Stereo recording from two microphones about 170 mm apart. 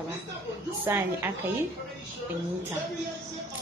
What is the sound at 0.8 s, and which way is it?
Speech, 15° right (ahead or behind).